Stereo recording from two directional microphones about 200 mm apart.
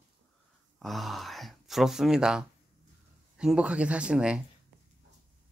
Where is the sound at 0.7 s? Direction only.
Centre (ahead or behind).